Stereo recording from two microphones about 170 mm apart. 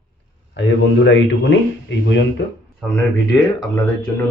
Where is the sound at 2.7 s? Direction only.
5° left (ahead or behind).